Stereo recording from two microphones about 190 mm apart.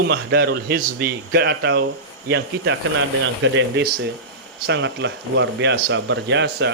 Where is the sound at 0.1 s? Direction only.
60° right (ahead or behind).